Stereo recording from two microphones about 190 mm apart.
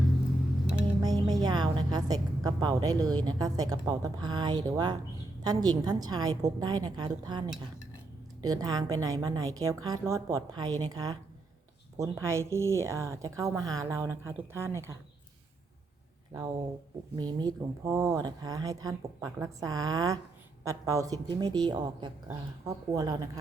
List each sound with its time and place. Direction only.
1.0 s music: 20° right (ahead or behind)
3.2 s speech: 20° right (ahead or behind)
17.2 s speech: 20° right (ahead or behind)